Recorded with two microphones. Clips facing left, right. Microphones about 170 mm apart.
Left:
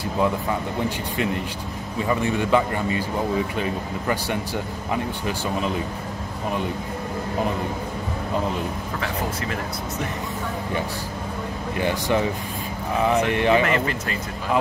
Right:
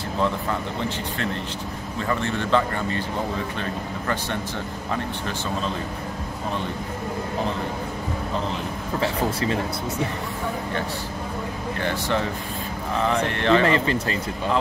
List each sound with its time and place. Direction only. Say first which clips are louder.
0.2 s speech: left 2 dB; 10° left (ahead or behind)
9.0 s speech: right 5 dB; 30° right (ahead or behind)
11.8 s speech: left 3 dB; 15° left (ahead or behind)
13.7 s speech: right 2 dB; 30° right (ahead or behind)